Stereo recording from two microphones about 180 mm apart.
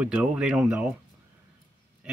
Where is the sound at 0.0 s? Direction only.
5° right (ahead or behind).